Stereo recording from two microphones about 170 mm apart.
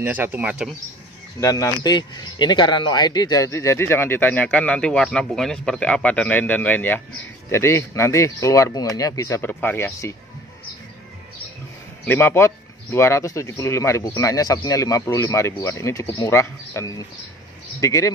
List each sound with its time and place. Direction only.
0.0 s speech: 10° right (ahead or behind)
1.4 s speech: 20° left (ahead or behind)
12.1 s speech: 10° left (ahead or behind)